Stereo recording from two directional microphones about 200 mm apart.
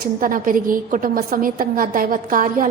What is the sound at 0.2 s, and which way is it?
A woman's voice, 45° right (ahead or behind).